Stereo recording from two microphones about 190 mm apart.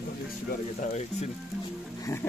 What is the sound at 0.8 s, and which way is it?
Frying, 35° left (ahead or behind).